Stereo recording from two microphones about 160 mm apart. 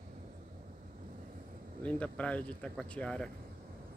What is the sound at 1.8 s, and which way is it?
Speech, 5° left (ahead or behind).